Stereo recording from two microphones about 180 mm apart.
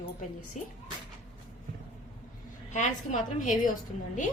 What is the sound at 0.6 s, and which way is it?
Speech, 40° left (ahead or behind).